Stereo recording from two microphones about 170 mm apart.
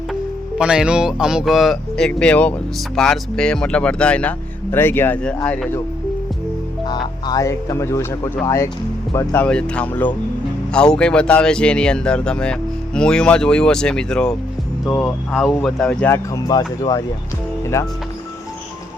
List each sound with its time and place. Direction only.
0.6 s speech: 5° right (ahead or behind)
6.8 s speech: 25° left (ahead or behind)